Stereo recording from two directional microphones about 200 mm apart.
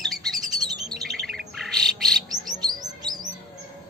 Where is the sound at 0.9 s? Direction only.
Centre (ahead or behind).